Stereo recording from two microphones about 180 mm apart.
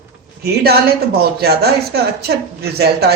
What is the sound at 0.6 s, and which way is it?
Speech, 60° right (ahead or behind).